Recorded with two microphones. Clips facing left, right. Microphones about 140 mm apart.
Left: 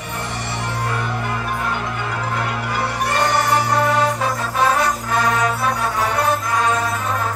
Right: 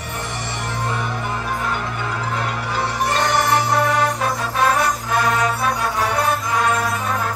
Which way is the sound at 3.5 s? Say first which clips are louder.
Even; centre (ahead or behind).